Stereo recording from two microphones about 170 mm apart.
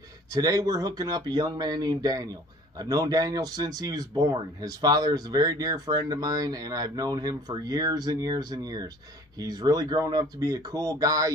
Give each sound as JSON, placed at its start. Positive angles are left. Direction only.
{"t": 0.3, "sound": "speech", "side_deg": -20}